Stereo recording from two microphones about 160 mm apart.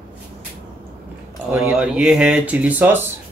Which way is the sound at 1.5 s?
5° right (ahead or behind).